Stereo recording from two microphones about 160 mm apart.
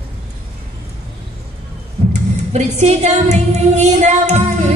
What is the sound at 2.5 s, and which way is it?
Child singing, 45° right (ahead or behind).